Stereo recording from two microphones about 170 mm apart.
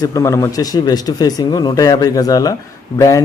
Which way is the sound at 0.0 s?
20° left (ahead or behind).